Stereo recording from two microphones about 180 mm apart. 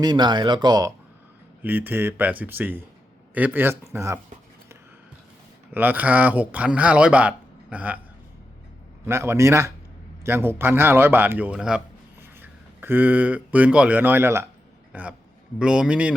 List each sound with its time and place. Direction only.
0.0 s speech: 25° right (ahead or behind)
1.6 s speech: 10° right (ahead or behind)
5.7 s speech: 10° right (ahead or behind)
9.0 s a man's voice: 15° right (ahead or behind)